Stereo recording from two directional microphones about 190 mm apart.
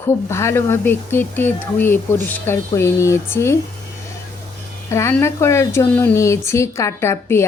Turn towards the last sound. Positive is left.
turn(degrees=15)  # may be behind; listen again after turning